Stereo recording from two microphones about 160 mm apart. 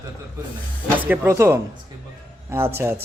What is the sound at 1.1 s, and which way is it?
Speech, 15° right (ahead or behind).